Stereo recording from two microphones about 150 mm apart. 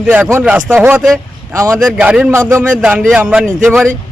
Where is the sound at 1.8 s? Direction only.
5° right (ahead or behind).